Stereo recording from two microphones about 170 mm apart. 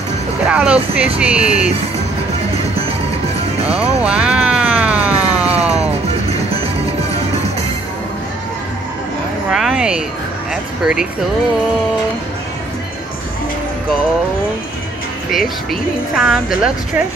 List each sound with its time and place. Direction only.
0.5 s speech: 5° right (ahead or behind)
3.7 s music: 5° right (ahead or behind)
6.3 s music: 35° right (ahead or behind)
9.5 s speech: 5° right (ahead or behind)
10.5 s music: 5° right (ahead or behind)
15.3 s speech: centre (ahead or behind)